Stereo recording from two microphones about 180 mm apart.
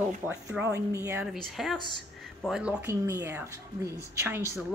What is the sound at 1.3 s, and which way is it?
A woman's voice, centre (ahead or behind).